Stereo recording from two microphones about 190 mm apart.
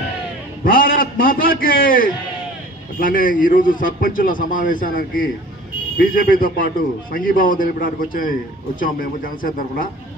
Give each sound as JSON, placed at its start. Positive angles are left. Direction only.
{"t": 0.7, "sound": "a man's voice", "side_deg": 50}